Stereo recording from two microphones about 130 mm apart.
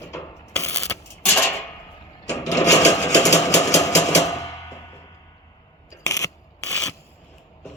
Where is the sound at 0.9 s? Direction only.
15° left (ahead or behind).